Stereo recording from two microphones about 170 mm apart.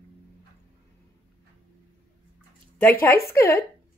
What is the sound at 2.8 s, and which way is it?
Speech, 10° left (ahead or behind).